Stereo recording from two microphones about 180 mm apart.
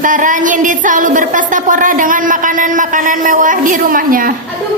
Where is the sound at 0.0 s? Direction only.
45° right (ahead or behind).